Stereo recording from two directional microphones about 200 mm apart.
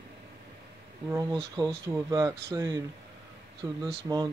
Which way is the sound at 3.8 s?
20° right (ahead or behind).